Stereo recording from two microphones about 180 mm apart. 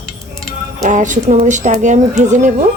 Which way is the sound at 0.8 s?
45° right (ahead or behind).